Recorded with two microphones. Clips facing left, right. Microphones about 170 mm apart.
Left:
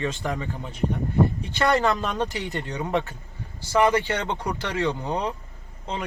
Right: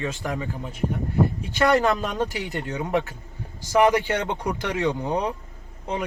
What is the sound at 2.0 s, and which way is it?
Speech, centre (ahead or behind).